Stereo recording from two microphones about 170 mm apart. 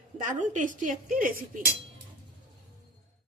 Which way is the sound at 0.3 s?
50° right (ahead or behind).